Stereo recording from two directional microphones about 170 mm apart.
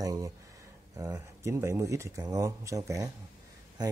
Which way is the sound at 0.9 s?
20° right (ahead or behind).